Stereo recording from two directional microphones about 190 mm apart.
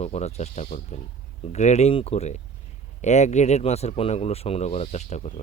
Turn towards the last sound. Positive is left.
turn(degrees=35)  # may be behind; listen again after turning